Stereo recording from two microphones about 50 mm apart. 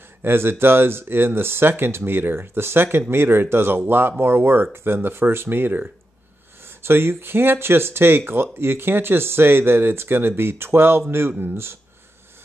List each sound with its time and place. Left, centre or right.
0.2 s speech: right
6.8 s speech: right